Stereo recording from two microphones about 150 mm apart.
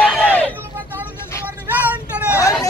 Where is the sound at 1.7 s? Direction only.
10° right (ahead or behind).